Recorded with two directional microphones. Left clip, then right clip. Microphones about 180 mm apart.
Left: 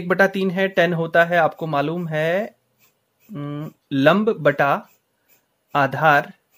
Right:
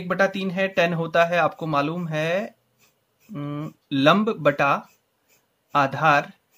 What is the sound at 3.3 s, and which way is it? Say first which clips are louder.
Speech: left 1 dB; 15° left (ahead or behind).